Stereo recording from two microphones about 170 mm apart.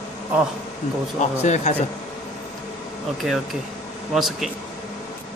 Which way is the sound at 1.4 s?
45° left (ahead or behind).